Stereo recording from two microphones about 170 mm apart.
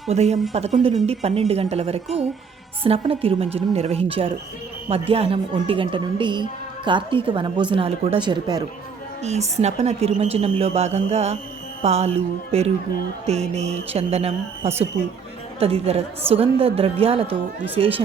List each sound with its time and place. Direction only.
0.1 s a woman's voice: 40° right (ahead or behind)
9.2 s a woman's voice: 40° right (ahead or behind)